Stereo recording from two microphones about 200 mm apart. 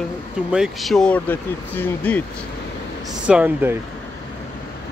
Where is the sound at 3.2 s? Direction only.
5° right (ahead or behind).